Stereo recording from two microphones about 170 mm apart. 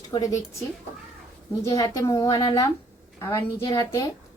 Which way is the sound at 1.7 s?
20° left (ahead or behind).